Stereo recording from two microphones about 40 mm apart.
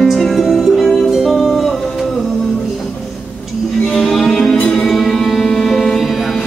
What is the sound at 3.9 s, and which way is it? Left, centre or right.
Music, centre.